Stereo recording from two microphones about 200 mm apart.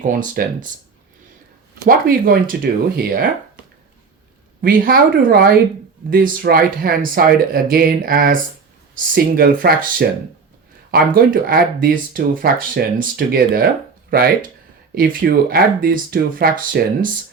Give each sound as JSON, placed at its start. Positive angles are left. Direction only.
{"t": 0.0, "sound": "speech", "side_deg": -40}
{"t": 1.8, "sound": "speech", "side_deg": -45}
{"t": 4.6, "sound": "speech", "side_deg": -50}